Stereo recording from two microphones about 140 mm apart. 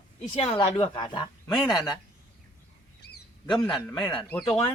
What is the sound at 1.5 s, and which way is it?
Speech, centre (ahead or behind).